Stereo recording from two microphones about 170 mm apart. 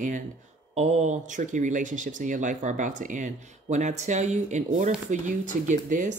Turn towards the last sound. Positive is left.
turn(degrees=-50)  # may be behind; listen again after turning